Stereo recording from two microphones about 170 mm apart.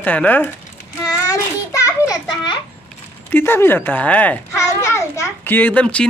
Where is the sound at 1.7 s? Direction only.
20° left (ahead or behind).